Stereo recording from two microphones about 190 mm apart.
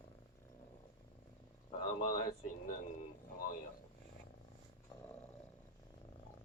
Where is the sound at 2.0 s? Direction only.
45° left (ahead or behind).